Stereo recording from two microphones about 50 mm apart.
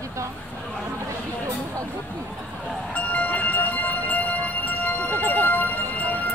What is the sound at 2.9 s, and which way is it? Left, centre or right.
Music, left.